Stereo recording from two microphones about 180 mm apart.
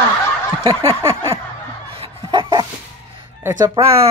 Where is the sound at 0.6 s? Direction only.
30° right (ahead or behind).